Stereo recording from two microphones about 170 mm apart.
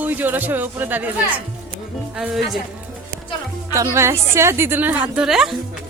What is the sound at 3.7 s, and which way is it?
A woman's voice, 15° right (ahead or behind).